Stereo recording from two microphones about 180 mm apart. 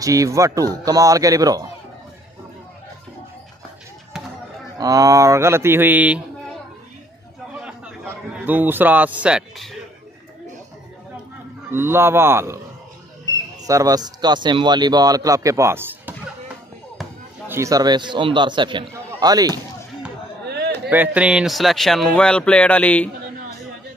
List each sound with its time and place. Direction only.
0.0 s speech: 20° right (ahead or behind)
4.7 s a man's voice: 20° right (ahead or behind)
8.1 s a man's voice: 10° right (ahead or behind)
11.7 s a man's voice: 15° right (ahead or behind)
13.7 s speech: 20° right (ahead or behind)
17.5 s speech: 15° right (ahead or behind)
20.4 s a sound: 65° right (ahead or behind)
20.9 s speech: 10° right (ahead or behind); by 23.0 s 10° left (ahead or behind)